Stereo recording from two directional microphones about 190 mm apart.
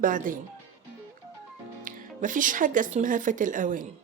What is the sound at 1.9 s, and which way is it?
Speech, 45° right (ahead or behind).